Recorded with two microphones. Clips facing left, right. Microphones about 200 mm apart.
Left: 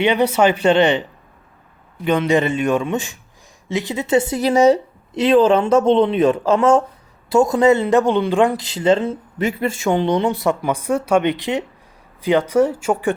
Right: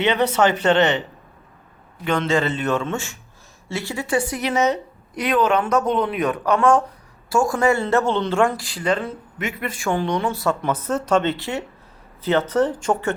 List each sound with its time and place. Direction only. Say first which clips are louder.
0.0 s a man's voice: left 3 dB; 10° left (ahead or behind)
2.0 s a man's voice: left 4 dB; 15° left (ahead or behind)